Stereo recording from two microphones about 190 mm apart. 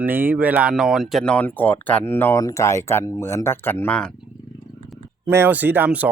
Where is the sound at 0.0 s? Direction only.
10° right (ahead or behind); by 4.1 s 5° left (ahead or behind).